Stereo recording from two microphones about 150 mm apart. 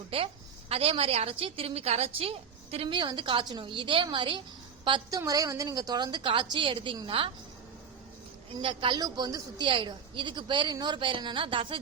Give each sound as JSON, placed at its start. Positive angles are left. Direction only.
{"t": 0.1, "sound": "a woman's voice", "side_deg": -35}
{"t": 8.5, "sound": "a woman's voice", "side_deg": -35}